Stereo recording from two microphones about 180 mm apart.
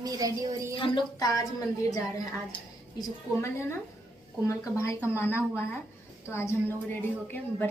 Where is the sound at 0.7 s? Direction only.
25° left (ahead or behind).